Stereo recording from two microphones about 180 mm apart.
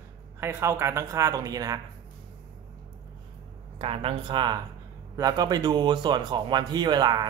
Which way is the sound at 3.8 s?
30° right (ahead or behind).